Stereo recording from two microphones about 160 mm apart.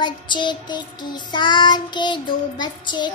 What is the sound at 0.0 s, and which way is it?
Child singing, 30° left (ahead or behind).